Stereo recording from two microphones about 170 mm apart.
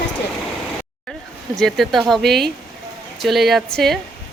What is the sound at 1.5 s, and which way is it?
Speech, centre (ahead or behind).